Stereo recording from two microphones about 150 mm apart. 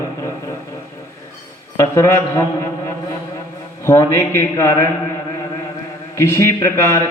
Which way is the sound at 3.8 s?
15° left (ahead or behind).